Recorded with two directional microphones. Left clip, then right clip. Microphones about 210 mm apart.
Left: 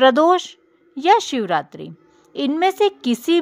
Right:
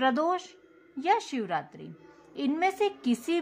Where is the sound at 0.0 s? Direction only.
40° left (ahead or behind).